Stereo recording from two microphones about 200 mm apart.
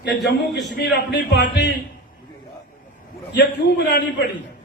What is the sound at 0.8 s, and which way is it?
Speech, 55° left (ahead or behind).